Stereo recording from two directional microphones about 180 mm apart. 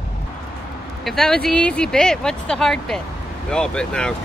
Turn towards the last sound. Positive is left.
turn(degrees=5)  # may be behind; listen again after turning